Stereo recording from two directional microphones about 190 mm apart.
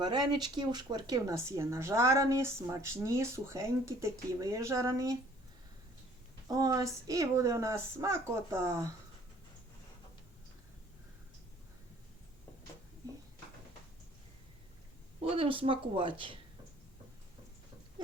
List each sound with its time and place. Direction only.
0.0 s speech: 25° right (ahead or behind)
6.5 s speech: 20° right (ahead or behind)
15.2 s speech: 30° right (ahead or behind)